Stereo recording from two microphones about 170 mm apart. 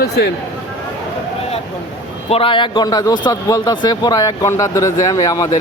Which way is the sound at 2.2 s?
35° left (ahead or behind).